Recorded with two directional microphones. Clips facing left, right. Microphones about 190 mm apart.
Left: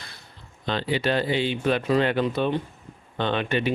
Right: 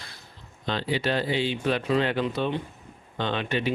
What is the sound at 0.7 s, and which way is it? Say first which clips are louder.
Speech: left 2 dB; 60° left (ahead or behind).